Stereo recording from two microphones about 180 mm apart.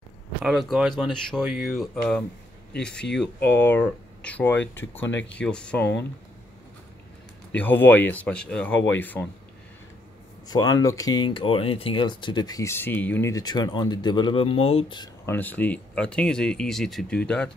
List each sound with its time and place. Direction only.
0.4 s speech: 5° right (ahead or behind)
3.4 s speech: 10° left (ahead or behind)
7.5 s speech: 10° left (ahead or behind)
10.5 s speech: 20° left (ahead or behind)
15.2 s speech: 10° left (ahead or behind)